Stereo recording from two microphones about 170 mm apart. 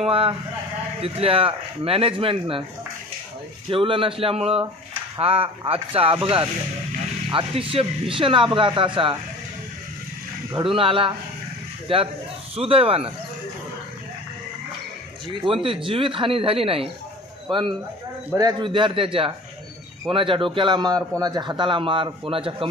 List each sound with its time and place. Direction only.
0.0 s speech: 35° right (ahead or behind)
3.7 s speech: 30° right (ahead or behind)
7.3 s a man's voice: 30° right (ahead or behind)
10.5 s speech: 30° right (ahead or behind)
15.2 s a man's voice: 30° right (ahead or behind)